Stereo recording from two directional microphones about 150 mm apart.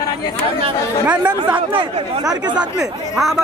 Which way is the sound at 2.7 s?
Centre (ahead or behind).